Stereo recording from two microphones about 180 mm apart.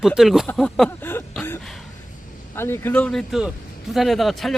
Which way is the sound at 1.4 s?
10° left (ahead or behind).